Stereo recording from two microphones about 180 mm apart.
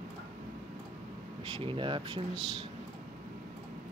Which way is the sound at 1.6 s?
30° right (ahead or behind).